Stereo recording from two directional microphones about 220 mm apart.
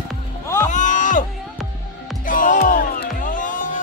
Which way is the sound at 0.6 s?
35° left (ahead or behind).